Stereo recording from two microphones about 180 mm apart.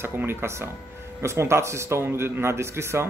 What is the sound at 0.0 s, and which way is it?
Speech, 10° right (ahead or behind).